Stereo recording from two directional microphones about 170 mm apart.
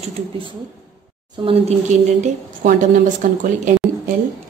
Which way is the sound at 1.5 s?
40° right (ahead or behind).